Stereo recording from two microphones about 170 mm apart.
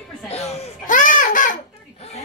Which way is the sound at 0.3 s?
40° left (ahead or behind).